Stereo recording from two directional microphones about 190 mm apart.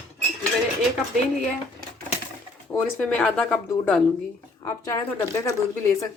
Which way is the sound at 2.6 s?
10° left (ahead or behind).